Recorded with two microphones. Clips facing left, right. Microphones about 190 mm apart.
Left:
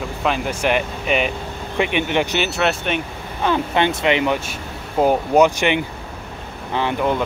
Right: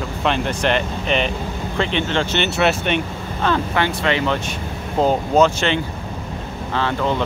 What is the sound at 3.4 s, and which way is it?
Speech, 20° left (ahead or behind).